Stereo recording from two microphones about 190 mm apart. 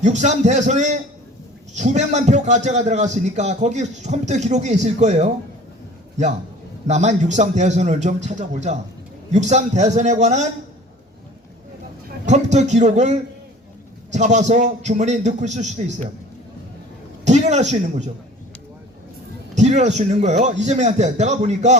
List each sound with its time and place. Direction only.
0.0 s a man's voice: 40° right (ahead or behind)
6.8 s a man's voice: 35° right (ahead or behind)
12.2 s a man's voice: 35° right (ahead or behind)
17.2 s a man's voice: 35° right (ahead or behind)
19.5 s a man's voice: 40° right (ahead or behind)